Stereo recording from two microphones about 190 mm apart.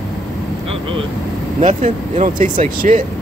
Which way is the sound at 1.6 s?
40° right (ahead or behind).